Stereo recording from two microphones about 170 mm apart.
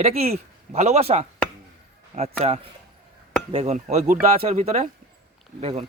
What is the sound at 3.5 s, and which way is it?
Speech, 40° right (ahead or behind).